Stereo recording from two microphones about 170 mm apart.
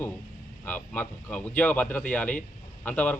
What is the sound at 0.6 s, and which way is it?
Speech, 10° left (ahead or behind).